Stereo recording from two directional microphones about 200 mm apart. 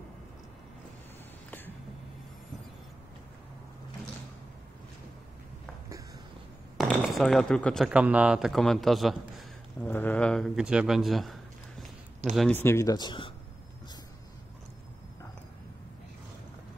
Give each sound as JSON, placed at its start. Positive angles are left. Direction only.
{"t": 6.8, "sound": "speech", "side_deg": 5}
{"t": 12.4, "sound": "speech", "side_deg": 10}